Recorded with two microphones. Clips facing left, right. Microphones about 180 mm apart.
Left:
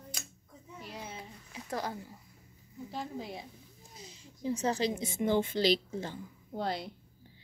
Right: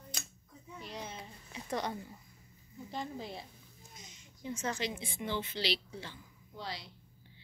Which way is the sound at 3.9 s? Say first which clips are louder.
Left 7 dB; 30° left (ahead or behind).